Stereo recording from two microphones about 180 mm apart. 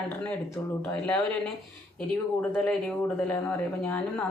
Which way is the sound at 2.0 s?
5° left (ahead or behind).